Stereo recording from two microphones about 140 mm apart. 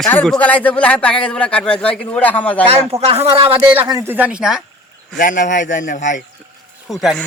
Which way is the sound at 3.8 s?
25° right (ahead or behind).